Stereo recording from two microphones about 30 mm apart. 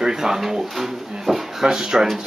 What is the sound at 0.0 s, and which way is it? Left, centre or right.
Pigeon, centre.